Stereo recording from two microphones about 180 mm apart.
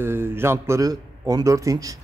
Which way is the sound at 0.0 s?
15° right (ahead or behind).